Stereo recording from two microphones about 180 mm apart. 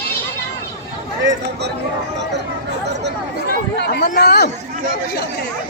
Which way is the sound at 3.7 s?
65° left (ahead or behind).